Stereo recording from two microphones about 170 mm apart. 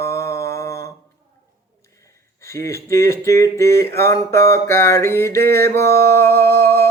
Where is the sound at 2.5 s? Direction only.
20° left (ahead or behind).